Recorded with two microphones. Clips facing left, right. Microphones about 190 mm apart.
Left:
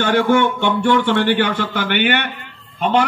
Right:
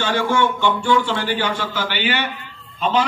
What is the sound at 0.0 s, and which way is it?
A man's voice, 60° left (ahead or behind).